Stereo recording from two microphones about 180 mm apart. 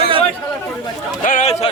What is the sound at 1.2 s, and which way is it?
Speech, 40° left (ahead or behind).